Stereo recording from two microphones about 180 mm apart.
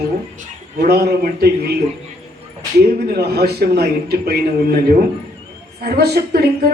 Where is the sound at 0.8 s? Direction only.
60° right (ahead or behind).